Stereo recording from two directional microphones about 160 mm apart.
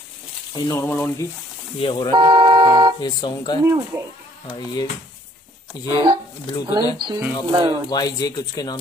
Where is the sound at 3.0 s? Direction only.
25° left (ahead or behind).